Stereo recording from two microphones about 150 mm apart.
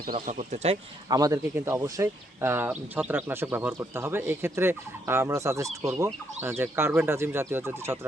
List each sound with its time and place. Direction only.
0.0 s speech: 65° right (ahead or behind); by 1.1 s 45° right (ahead or behind)
1.1 s speech: 25° right (ahead or behind)